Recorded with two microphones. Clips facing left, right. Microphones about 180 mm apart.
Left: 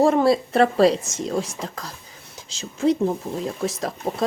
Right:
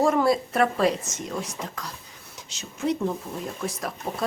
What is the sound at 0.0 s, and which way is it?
A woman's voice, 30° left (ahead or behind).